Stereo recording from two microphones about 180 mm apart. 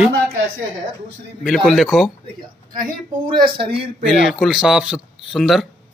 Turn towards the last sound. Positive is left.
turn(degrees=0)  # may be behind; listen again after turning